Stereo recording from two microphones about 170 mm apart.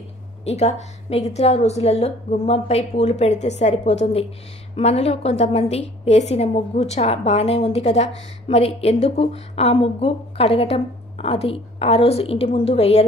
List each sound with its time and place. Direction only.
0.5 s a woman's voice: 40° left (ahead or behind)